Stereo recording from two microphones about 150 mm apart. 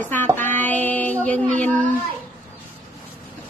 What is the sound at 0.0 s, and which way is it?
Speech, 10° left (ahead or behind).